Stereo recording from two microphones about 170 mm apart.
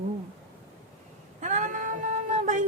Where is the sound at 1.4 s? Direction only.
50° right (ahead or behind).